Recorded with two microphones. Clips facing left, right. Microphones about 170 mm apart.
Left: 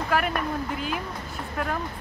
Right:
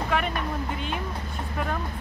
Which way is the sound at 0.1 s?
5° left (ahead or behind).